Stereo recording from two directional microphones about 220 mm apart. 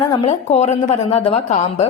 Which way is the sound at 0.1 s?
30° left (ahead or behind).